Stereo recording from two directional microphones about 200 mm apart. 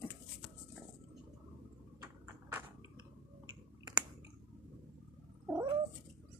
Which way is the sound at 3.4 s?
20° right (ahead or behind).